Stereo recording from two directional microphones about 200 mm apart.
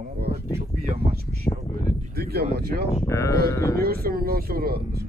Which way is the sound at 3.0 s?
15° left (ahead or behind).